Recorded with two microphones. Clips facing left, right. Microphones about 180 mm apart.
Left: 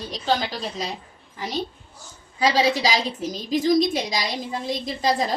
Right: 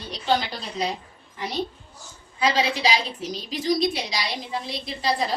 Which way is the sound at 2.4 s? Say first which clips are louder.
Left 3 dB; 40° left (ahead or behind).